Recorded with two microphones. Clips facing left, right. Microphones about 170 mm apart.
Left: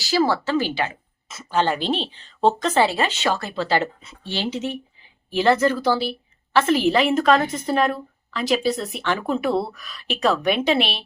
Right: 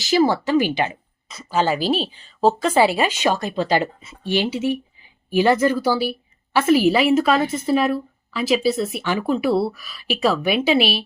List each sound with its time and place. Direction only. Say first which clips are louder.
0.0 s speech: right 3 dB; 20° right (ahead or behind)
1.3 s a woman's voice: right 1 dB; 5° right (ahead or behind)